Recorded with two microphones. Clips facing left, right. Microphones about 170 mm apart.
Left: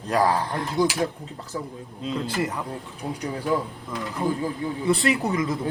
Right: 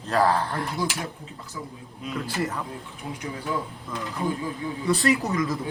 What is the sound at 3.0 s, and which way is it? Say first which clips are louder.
Speech: left 4 dB; 40° left (ahead or behind).